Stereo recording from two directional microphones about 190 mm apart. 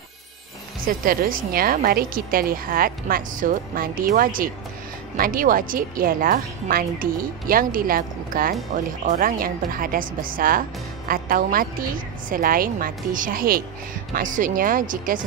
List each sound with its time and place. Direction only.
0.7 s a woman's voice: 50° right (ahead or behind)